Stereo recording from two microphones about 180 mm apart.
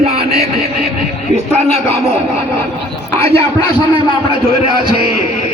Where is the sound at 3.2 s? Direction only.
35° right (ahead or behind).